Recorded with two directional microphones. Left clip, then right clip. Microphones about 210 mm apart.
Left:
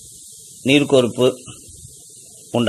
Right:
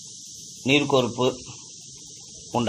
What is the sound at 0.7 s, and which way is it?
Speech, 45° left (ahead or behind).